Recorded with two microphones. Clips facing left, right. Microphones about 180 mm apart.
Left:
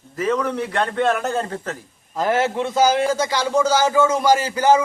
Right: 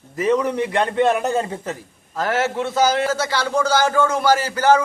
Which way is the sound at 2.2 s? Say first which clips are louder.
Left 1 dB; 10° left (ahead or behind).